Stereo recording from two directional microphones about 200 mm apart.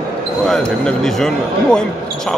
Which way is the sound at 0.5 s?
5° left (ahead or behind).